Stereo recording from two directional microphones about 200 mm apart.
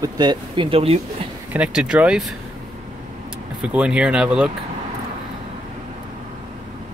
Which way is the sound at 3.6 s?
5° right (ahead or behind).